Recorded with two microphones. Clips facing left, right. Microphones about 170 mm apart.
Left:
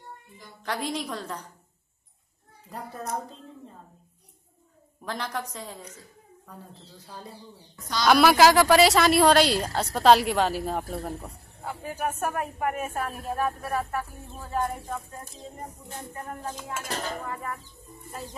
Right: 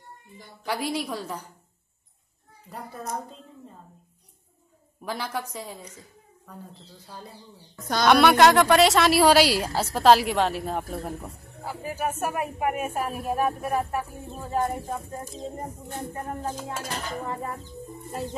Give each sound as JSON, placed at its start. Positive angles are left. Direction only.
{"t": 0.7, "sound": "speech", "side_deg": -10}
{"t": 5.0, "sound": "speech", "side_deg": -5}
{"t": 8.1, "sound": "speech", "side_deg": 0}
{"t": 15.6, "sound": "music", "side_deg": -50}
{"t": 16.2, "sound": "speech", "side_deg": -30}